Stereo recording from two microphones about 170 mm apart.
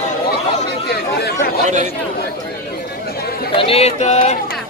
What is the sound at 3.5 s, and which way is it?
Speech, 35° left (ahead or behind).